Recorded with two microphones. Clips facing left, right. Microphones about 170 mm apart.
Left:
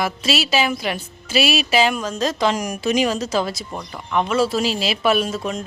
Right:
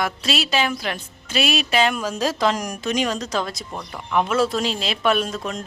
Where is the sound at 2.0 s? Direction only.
10° right (ahead or behind).